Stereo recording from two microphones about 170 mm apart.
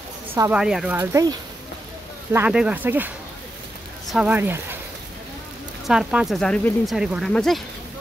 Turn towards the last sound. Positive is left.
turn(degrees=0)  # may be behind; listen again after turning